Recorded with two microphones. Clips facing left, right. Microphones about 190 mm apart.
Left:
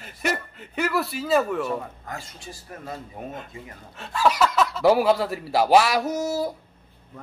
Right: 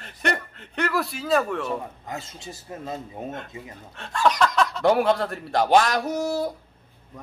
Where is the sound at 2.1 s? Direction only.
25° right (ahead or behind).